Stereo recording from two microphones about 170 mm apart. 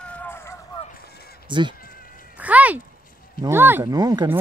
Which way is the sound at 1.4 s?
25° right (ahead or behind).